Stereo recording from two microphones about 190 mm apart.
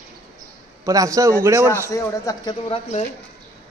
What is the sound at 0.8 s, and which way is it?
A man's voice, 15° right (ahead or behind).